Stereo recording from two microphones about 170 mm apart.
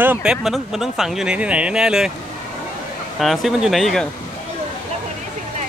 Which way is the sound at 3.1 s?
Centre (ahead or behind).